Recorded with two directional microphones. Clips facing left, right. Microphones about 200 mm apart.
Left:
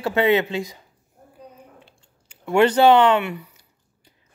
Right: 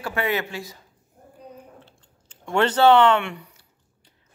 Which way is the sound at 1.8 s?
10° left (ahead or behind).